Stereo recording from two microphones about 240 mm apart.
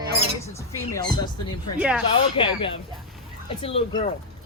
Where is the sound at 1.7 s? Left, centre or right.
Centre.